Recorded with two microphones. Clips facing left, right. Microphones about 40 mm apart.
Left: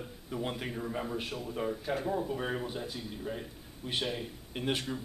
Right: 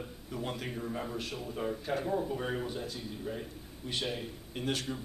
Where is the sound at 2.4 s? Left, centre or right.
Centre.